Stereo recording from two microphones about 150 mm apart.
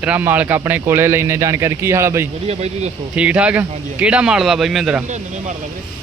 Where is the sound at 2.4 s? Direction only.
45° right (ahead or behind).